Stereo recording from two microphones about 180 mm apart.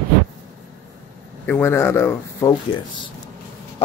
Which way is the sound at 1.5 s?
15° left (ahead or behind).